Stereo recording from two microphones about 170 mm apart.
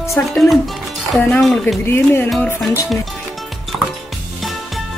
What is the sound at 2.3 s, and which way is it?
Speech, centre (ahead or behind).